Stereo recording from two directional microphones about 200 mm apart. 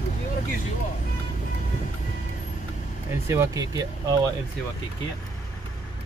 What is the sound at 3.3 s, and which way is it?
Speech, 15° right (ahead or behind).